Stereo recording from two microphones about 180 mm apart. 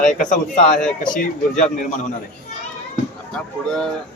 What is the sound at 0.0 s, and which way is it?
Speech, 45° left (ahead or behind).